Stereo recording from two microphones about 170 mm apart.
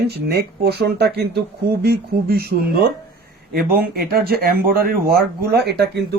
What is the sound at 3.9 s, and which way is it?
Speech, 65° right (ahead or behind).